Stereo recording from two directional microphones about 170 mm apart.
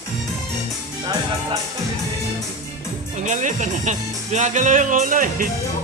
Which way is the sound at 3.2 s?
45° right (ahead or behind).